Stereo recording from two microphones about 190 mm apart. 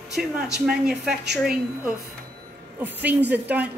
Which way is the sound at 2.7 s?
10° right (ahead or behind).